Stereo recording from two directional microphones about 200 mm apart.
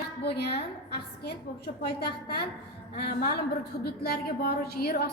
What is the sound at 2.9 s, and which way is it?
A woman's voice, 50° left (ahead or behind).